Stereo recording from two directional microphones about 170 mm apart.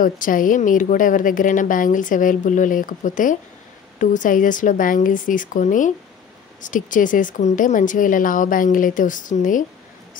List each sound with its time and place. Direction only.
0.0 s a woman's voice: 55° left (ahead or behind)